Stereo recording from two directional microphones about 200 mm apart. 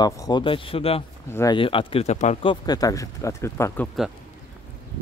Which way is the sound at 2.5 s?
20° left (ahead or behind).